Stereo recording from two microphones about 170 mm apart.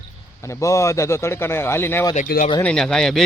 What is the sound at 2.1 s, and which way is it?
Speech, 55° left (ahead or behind).